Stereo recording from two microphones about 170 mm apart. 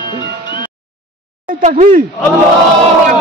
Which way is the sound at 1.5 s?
45° right (ahead or behind).